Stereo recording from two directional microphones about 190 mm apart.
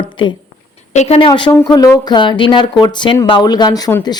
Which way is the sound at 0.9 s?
35° left (ahead or behind).